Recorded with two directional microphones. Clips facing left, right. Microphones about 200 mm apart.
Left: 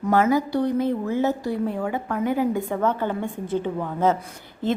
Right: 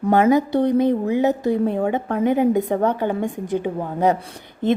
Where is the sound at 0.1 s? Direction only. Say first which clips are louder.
Right 4 dB; 20° right (ahead or behind).